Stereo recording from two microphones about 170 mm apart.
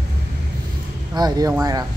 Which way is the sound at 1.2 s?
20° right (ahead or behind).